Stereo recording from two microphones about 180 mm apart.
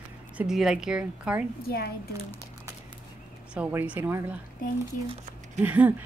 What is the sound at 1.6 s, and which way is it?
Speech, 55° left (ahead or behind).